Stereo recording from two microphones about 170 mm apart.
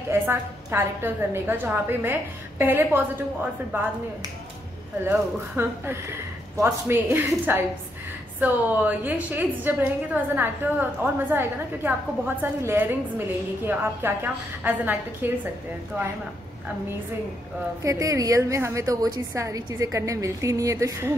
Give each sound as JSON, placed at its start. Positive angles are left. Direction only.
{"t": 0.1, "sound": "a woman's voice", "side_deg": -15}
{"t": 5.0, "sound": "a woman's voice", "side_deg": -15}
{"t": 17.8, "sound": "a woman's voice", "side_deg": -20}